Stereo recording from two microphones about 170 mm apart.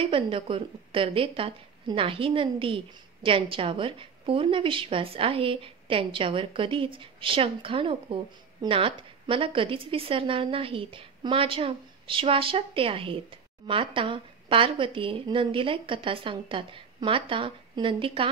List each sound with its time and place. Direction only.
0.0 s a woman's voice: 30° right (ahead or behind)